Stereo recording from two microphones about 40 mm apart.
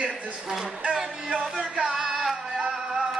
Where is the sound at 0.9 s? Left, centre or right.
Centre.